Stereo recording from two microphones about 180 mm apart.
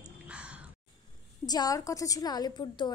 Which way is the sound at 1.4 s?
20° left (ahead or behind).